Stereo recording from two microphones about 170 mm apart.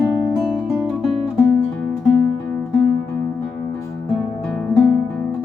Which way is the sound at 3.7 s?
5° left (ahead or behind).